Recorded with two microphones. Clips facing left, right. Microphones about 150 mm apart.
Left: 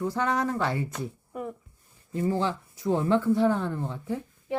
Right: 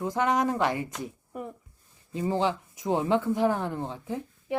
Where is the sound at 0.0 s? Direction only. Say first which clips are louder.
Right 1 dB; 20° right (ahead or behind).